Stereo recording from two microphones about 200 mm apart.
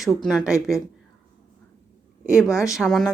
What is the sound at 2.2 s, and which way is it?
Speech, 5° right (ahead or behind).